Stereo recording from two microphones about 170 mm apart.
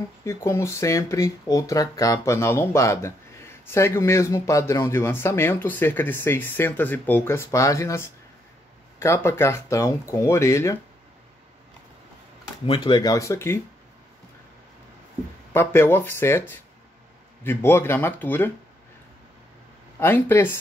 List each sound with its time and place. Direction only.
0.2 s speech: 15° left (ahead or behind)
12.6 s speech: 30° left (ahead or behind)
15.5 s speech: 15° left (ahead or behind)
20.0 s speech: 15° left (ahead or behind)